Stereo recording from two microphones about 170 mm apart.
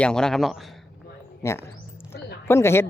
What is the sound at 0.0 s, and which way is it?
Speech, 5° left (ahead or behind).